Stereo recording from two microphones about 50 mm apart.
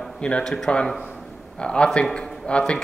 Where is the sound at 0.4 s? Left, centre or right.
Centre.